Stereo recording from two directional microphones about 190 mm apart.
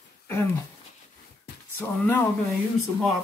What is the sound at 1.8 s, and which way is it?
Speech, 10° left (ahead or behind).